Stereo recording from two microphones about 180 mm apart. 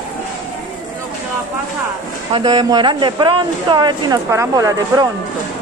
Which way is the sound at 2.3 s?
25° right (ahead or behind).